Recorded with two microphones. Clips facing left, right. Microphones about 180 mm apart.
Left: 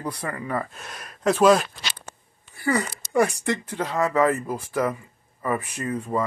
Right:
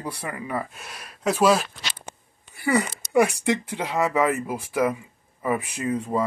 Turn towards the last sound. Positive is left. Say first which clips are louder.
# right 1 dB
turn(degrees=-15)  # may be behind; listen again after turning